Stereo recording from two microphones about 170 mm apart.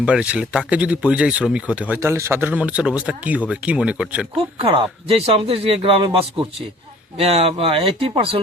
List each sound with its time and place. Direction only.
0.0 s speech: 5° right (ahead or behind)
4.6 s speech: 35° right (ahead or behind)